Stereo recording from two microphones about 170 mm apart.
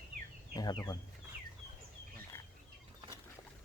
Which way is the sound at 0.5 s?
25° left (ahead or behind).